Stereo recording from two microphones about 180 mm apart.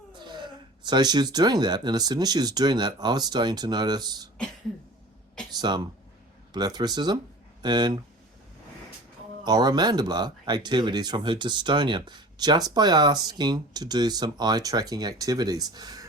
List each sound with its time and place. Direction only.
0.1 s speech: 25° right (ahead or behind)
5.5 s speech: 25° right (ahead or behind)
9.4 s speech: 20° right (ahead or behind)